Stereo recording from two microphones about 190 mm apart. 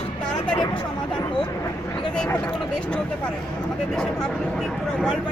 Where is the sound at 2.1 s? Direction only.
5° left (ahead or behind).